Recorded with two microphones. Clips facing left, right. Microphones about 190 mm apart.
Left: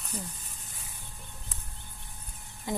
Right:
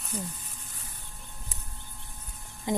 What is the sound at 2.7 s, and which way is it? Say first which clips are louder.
Speech: right 5 dB; 20° right (ahead or behind).